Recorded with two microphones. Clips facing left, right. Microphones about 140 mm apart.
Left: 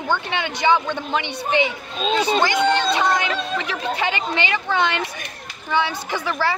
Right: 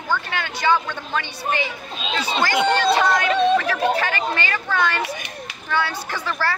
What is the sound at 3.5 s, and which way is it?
A woman's voice, 20° left (ahead or behind).